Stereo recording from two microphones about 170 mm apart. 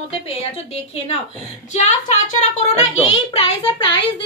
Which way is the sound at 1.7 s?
45° left (ahead or behind).